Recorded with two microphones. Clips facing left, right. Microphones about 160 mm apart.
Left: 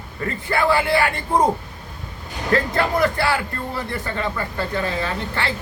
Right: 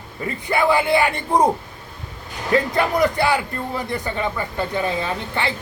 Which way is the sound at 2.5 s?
15° right (ahead or behind).